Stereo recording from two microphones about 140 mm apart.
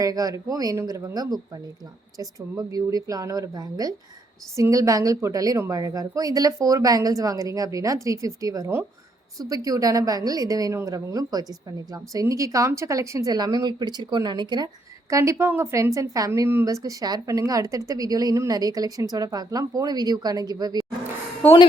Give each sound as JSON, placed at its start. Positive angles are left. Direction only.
{"t": 0.0, "sound": "a woman's voice", "side_deg": -25}
{"t": 15.1, "sound": "a woman's voice", "side_deg": -20}
{"t": 21.4, "sound": "a woman's voice", "side_deg": 10}